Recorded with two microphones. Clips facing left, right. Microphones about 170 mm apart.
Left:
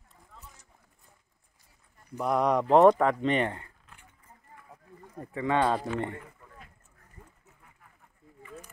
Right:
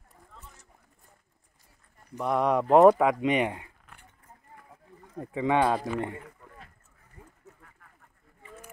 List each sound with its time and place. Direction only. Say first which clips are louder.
2.1 s speech: even; centre (ahead or behind)
5.3 s speech: right 2 dB; 15° right (ahead or behind)
7.2 s a sound: right 2 dB; 10° right (ahead or behind)